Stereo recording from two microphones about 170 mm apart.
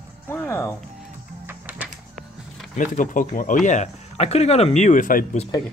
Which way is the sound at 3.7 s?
40° left (ahead or behind).